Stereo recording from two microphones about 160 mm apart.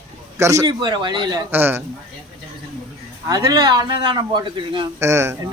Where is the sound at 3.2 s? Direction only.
20° right (ahead or behind).